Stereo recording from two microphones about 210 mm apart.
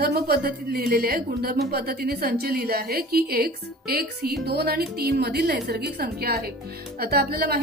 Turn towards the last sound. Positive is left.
turn(degrees=-45)  # may be behind; listen again after turning